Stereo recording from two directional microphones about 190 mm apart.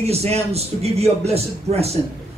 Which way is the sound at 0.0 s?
35° right (ahead or behind).